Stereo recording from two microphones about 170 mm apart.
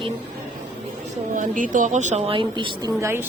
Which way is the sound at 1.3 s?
50° right (ahead or behind).